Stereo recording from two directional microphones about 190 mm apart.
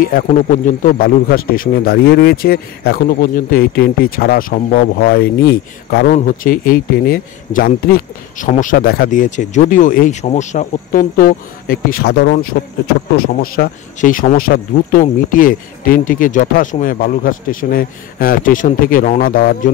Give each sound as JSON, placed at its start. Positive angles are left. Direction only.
{"t": 0.0, "sound": "a man's voice", "side_deg": 50}